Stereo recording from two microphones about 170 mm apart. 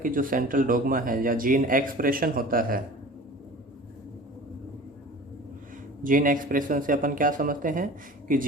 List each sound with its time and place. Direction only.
0.0 s speech: 55° right (ahead or behind)
6.0 s speech: 50° right (ahead or behind)